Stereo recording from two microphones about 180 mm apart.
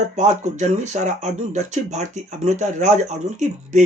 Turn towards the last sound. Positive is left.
turn(degrees=-40)  # may be behind; listen again after turning